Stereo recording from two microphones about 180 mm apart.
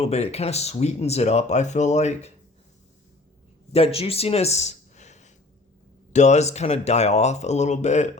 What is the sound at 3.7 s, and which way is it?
Speech, 35° left (ahead or behind).